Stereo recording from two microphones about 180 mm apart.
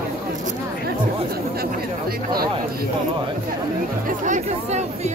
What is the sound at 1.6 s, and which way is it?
Chatter, 55° right (ahead or behind).